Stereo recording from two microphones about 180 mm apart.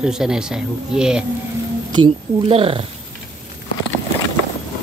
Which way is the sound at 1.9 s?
30° right (ahead or behind).